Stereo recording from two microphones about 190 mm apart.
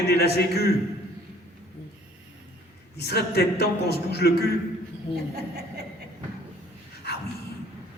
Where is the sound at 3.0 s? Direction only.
55° left (ahead or behind).